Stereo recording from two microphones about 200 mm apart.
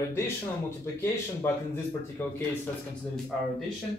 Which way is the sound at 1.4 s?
10° left (ahead or behind).